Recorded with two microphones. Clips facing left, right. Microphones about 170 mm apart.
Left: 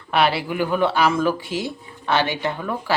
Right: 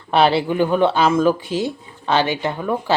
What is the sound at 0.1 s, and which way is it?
Speech, 30° right (ahead or behind).